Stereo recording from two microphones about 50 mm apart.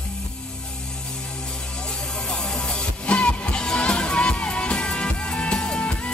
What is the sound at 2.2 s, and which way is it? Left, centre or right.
Music, centre.